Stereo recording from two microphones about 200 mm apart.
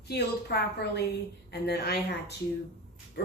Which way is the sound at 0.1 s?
55° left (ahead or behind).